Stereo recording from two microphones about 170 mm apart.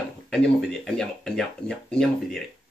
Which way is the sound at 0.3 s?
5° left (ahead or behind).